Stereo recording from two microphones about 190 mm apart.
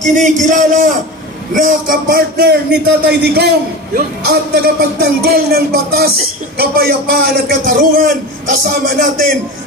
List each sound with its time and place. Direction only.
0.0 s a man's voice: 40° right (ahead or behind)